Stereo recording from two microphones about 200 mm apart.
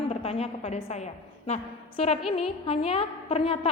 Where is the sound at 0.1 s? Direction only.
30° left (ahead or behind).